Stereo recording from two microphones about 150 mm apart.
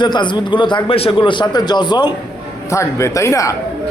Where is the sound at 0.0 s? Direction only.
30° left (ahead or behind).